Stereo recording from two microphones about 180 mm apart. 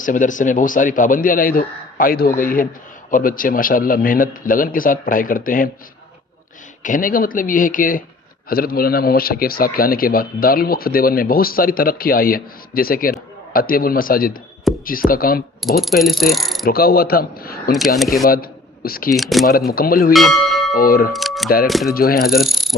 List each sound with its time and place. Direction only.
0.0 s speech: 45° left (ahead or behind)
6.8 s a man's voice: 50° left (ahead or behind)
15.8 s mechanisms: centre (ahead or behind)
16.6 s a man's voice: 55° left (ahead or behind)
17.7 s mechanisms: centre (ahead or behind)
18.3 s speech: 55° left (ahead or behind)
19.1 s mechanisms: centre (ahead or behind)
19.5 s speech: 55° left (ahead or behind)
20.1 s speech: centre (ahead or behind)
20.7 s speech: 55° left (ahead or behind)
21.1 s speech: centre (ahead or behind)
21.8 s a man's voice: 55° left (ahead or behind)
22.4 s mechanisms: centre (ahead or behind)